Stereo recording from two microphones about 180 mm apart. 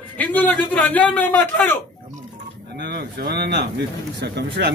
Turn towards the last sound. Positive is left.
turn(degrees=-65)  # may be behind; listen again after turning